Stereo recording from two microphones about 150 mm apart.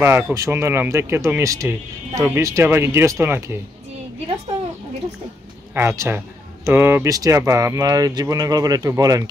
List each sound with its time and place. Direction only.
0.0 s speech: 20° right (ahead or behind)
5.8 s speech: 15° right (ahead or behind)